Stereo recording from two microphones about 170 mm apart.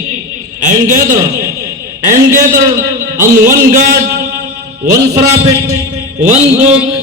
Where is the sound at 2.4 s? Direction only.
20° right (ahead or behind).